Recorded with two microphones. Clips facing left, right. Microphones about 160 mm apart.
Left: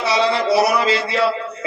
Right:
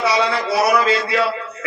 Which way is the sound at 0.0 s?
25° left (ahead or behind).